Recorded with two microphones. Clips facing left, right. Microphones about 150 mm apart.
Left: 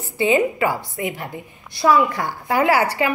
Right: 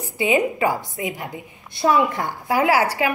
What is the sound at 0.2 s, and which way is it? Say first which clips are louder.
A woman's voice: left 2 dB; 15° right (ahead or behind).